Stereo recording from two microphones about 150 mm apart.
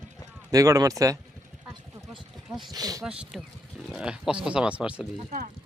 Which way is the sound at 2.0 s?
Centre (ahead or behind).